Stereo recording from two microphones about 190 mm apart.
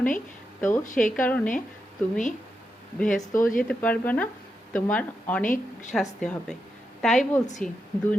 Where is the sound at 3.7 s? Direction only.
10° left (ahead or behind).